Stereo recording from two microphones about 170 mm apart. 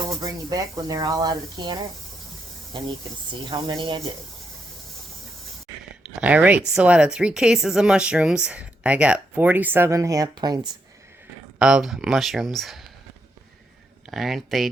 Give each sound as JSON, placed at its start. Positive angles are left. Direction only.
{"t": 0.1, "sound": "speech", "side_deg": -20}
{"t": 3.3, "sound": "speech", "side_deg": -25}
{"t": 6.0, "sound": "a woman's voice", "side_deg": -5}
{"t": 11.6, "sound": "a woman's voice", "side_deg": -5}
{"t": 14.1, "sound": "a woman's voice", "side_deg": 0}